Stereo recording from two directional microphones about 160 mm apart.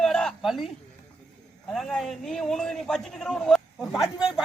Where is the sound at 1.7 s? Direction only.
Centre (ahead or behind).